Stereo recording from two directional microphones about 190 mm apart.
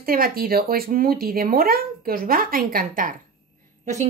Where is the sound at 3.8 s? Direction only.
40° right (ahead or behind).